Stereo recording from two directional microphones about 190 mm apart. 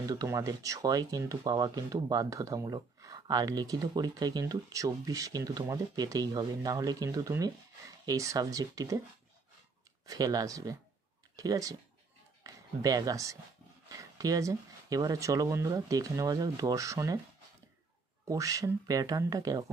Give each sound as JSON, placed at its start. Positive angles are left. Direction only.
{"t": 0.0, "sound": "speech", "side_deg": -20}
{"t": 10.0, "sound": "speech", "side_deg": -20}
{"t": 18.3, "sound": "speech", "side_deg": -15}